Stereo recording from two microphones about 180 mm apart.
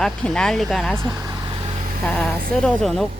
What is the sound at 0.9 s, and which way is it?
Vehicle, 20° right (ahead or behind).